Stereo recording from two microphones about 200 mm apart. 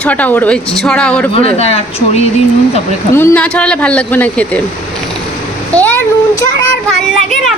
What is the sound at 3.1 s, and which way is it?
A woman's voice, 10° left (ahead or behind).